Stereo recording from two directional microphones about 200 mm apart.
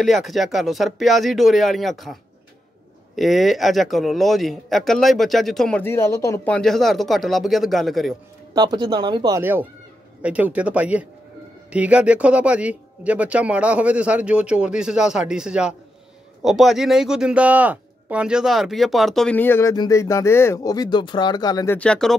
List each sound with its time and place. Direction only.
0.0 s speech: centre (ahead or behind)
3.2 s speech: centre (ahead or behind)
8.5 s speech: 20° right (ahead or behind); by 21.7 s 20° left (ahead or behind)
21.7 s speech: 5° left (ahead or behind)